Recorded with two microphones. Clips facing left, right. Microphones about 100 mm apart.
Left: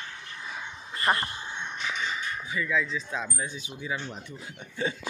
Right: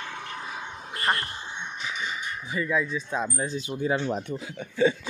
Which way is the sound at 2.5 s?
30° right (ahead or behind).